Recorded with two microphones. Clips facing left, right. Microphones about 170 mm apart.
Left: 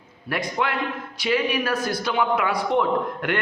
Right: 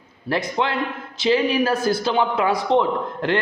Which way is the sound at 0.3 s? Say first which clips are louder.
Right 3 dB; 25° right (ahead or behind).